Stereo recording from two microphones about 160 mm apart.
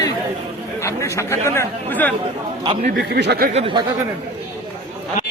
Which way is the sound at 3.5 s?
35° right (ahead or behind).